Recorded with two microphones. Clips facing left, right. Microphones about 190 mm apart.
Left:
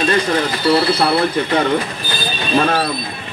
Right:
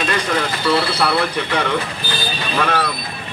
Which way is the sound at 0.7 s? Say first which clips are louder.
Left 4 dB; 30° left (ahead or behind).